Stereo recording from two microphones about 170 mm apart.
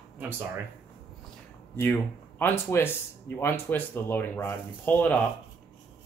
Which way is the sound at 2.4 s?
15° left (ahead or behind).